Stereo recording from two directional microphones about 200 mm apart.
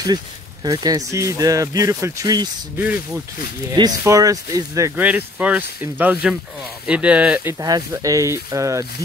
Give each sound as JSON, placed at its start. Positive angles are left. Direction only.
{"t": 0.7, "sound": "speech", "side_deg": -20}
{"t": 3.7, "sound": "speech", "side_deg": -20}
{"t": 7.6, "sound": "speech", "side_deg": -20}